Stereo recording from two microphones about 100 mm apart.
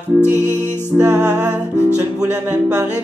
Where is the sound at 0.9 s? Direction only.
15° right (ahead or behind).